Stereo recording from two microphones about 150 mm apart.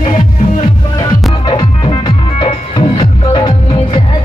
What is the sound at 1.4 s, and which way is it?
Music, 30° left (ahead or behind).